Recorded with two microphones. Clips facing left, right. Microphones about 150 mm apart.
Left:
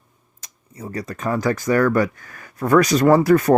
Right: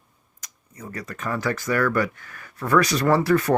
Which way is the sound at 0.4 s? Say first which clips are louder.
Left 5 dB; 30° left (ahead or behind).